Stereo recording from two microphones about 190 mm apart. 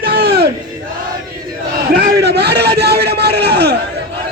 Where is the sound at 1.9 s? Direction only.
60° right (ahead or behind).